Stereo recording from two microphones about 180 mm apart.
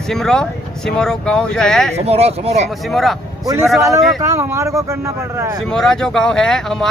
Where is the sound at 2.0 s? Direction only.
35° right (ahead or behind).